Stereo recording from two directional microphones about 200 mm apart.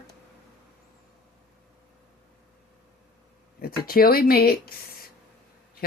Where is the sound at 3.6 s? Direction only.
50° left (ahead or behind).